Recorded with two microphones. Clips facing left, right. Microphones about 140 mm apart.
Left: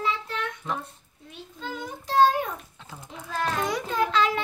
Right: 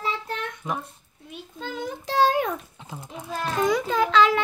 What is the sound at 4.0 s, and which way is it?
Speech, 90° right.